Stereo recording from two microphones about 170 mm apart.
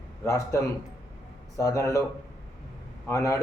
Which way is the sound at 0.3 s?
20° left (ahead or behind).